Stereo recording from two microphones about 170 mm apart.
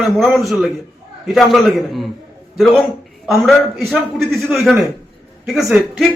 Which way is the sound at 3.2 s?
Centre (ahead or behind).